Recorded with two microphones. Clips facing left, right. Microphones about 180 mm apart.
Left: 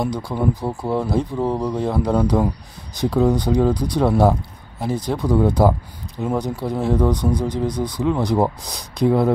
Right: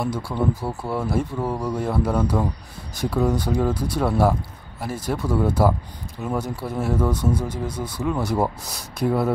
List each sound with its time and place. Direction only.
0.0 s speech: 15° left (ahead or behind)